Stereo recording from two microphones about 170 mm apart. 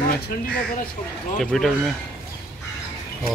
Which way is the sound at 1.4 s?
Centre (ahead or behind).